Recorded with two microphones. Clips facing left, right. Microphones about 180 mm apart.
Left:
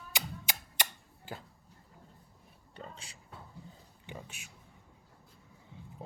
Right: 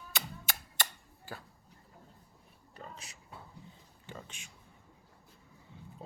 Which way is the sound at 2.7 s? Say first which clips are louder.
Left 1 dB; 30° left (ahead or behind).